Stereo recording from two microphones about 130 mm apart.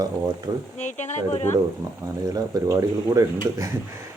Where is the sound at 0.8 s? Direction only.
65° left (ahead or behind).